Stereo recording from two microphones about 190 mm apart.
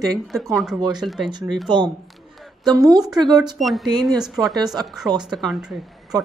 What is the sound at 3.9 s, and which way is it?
Speech, 20° right (ahead or behind).